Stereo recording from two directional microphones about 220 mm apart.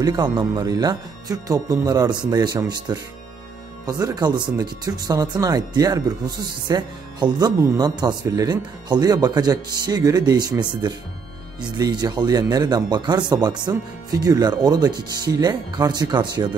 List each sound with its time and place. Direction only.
0.0 s speech: 20° right (ahead or behind)